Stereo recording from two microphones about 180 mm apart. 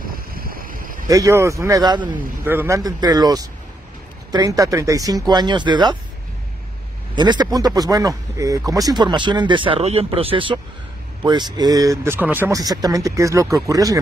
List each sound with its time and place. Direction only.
0.0 s boat: 55° right (ahead or behind)
1.0 s speech: 20° right (ahead or behind)
2.4 s speech: 10° right (ahead or behind)
7.2 s speech: 25° right (ahead or behind)